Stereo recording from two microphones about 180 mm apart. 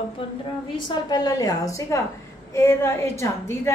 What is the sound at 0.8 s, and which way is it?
A woman's voice, 20° left (ahead or behind).